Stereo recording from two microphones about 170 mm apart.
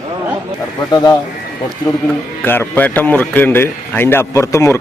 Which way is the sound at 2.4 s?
10° left (ahead or behind).